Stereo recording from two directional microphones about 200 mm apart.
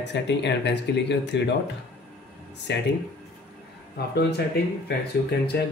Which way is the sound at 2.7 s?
55° left (ahead or behind).